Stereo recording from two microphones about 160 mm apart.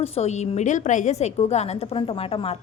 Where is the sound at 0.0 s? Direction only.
40° left (ahead or behind).